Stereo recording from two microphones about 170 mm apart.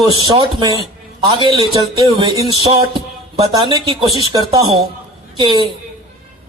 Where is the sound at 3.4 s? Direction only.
30° right (ahead or behind).